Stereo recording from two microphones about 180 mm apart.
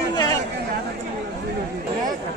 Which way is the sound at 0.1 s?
25° left (ahead or behind).